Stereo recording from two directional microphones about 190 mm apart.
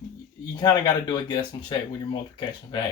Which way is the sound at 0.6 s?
20° left (ahead or behind).